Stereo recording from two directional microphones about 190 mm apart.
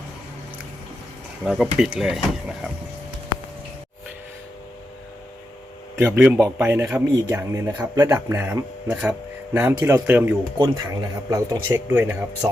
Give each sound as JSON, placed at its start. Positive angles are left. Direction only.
{"t": 1.5, "sound": "speech", "side_deg": 0}
{"t": 6.0, "sound": "a man's voice", "side_deg": -10}